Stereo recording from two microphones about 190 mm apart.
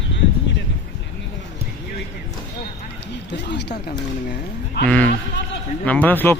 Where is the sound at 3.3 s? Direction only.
65° left (ahead or behind).